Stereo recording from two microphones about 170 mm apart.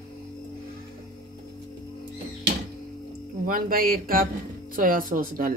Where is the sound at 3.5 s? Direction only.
55° right (ahead or behind).